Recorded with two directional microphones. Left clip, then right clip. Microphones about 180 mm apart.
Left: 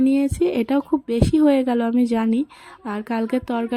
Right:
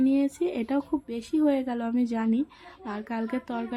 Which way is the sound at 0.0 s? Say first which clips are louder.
Left 6 dB; 35° left (ahead or behind).